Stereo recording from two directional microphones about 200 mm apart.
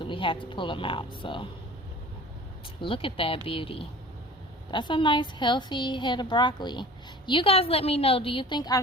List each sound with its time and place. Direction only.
0.0 s a woman's voice: 25° left (ahead or behind)
2.8 s a woman's voice: 25° left (ahead or behind)